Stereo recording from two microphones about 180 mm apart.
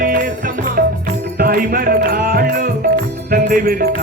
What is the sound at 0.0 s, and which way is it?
Music, 50° right (ahead or behind).